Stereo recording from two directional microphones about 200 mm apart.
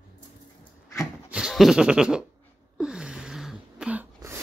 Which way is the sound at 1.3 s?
Centre (ahead or behind).